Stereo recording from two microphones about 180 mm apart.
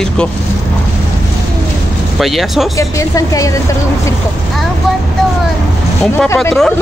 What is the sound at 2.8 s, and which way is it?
Speech, 20° left (ahead or behind).